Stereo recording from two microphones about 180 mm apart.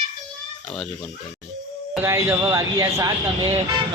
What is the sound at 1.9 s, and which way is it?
Speech, 15° right (ahead or behind).